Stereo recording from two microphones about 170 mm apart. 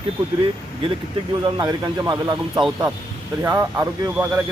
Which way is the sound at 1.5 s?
25° right (ahead or behind).